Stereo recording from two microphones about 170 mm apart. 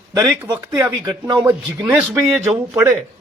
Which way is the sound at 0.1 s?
20° right (ahead or behind).